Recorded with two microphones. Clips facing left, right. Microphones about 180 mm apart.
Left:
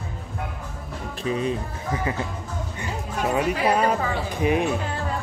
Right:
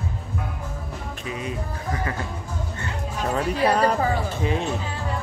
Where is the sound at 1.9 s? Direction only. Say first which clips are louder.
Left 3 dB; 20° left (ahead or behind).